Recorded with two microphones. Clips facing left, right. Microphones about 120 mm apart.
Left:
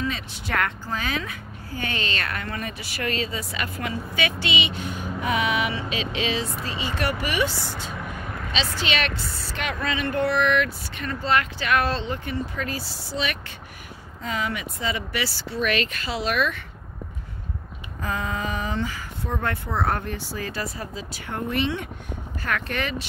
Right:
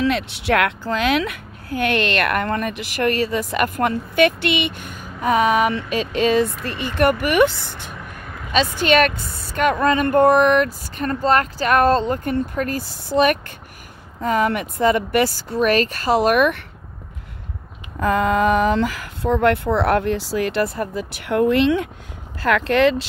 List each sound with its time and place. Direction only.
0.0 s speech: 75° right (ahead or behind); by 7.9 s 55° right (ahead or behind)
7.9 s a sound: 5° right (ahead or behind)
8.8 s speech: 50° right (ahead or behind)
17.9 s speech: 75° right (ahead or behind); by 23.0 s 90° right